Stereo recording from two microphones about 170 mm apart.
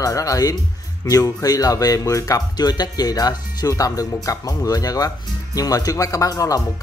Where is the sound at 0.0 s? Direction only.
20° left (ahead or behind).